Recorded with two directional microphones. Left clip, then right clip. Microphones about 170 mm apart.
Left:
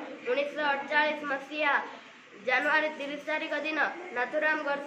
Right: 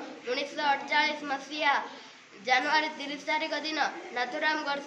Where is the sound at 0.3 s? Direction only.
25° right (ahead or behind).